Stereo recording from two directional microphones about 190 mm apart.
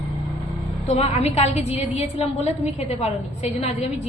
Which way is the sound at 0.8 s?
35° left (ahead or behind).